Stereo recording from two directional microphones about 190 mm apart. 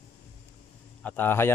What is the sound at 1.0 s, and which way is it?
Speech, 10° left (ahead or behind).